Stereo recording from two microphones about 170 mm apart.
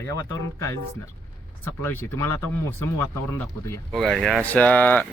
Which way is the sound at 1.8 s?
15° left (ahead or behind).